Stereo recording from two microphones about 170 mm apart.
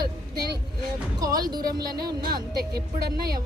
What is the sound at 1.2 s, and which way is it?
Speech, 20° right (ahead or behind).